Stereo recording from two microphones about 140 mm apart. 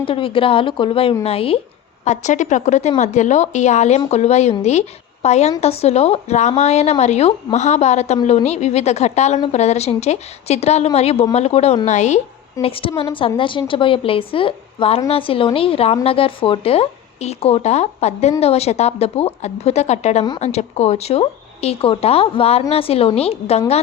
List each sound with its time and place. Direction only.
0.0 s a woman's voice: 40° left (ahead or behind)
2.0 s a woman's voice: 60° left (ahead or behind)
12.6 s a woman's voice: 40° left (ahead or behind)